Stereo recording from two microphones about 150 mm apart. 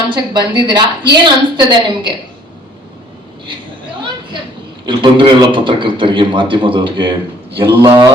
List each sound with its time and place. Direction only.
0.1 s a man's voice: 30° right (ahead or behind)
4.9 s a man's voice: 30° right (ahead or behind)